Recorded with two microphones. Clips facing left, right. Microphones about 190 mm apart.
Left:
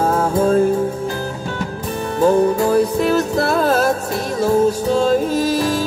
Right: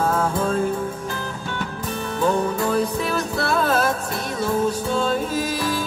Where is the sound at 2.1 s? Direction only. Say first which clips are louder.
Left 7 dB; 40° left (ahead or behind).